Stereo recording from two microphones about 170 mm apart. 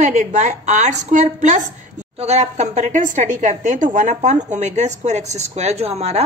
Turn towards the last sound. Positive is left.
turn(degrees=-40)  # may be behind; listen again after turning